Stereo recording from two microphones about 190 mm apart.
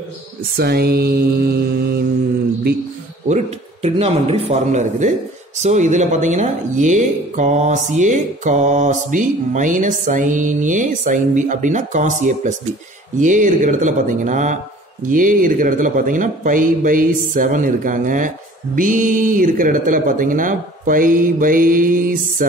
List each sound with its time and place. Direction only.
0.6 s mantra: 55° right (ahead or behind)
3.3 s speech: 35° right (ahead or behind)